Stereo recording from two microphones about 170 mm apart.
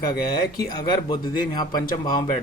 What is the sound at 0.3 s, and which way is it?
Speech, 25° left (ahead or behind).